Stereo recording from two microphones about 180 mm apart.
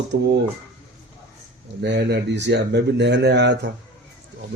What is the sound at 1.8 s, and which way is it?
Speech, 65° right (ahead or behind).